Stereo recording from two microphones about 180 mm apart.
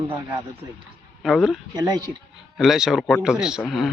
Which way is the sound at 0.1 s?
15° right (ahead or behind).